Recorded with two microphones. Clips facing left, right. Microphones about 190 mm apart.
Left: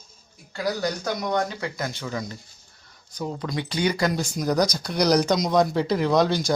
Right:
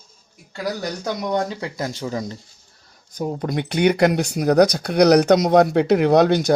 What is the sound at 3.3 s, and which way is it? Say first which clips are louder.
Speech: right 6 dB; 55° right (ahead or behind).